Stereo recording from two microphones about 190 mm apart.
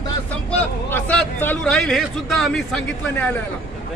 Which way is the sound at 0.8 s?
10° left (ahead or behind).